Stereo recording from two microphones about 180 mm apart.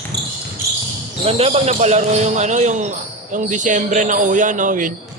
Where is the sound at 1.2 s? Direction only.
35° right (ahead or behind).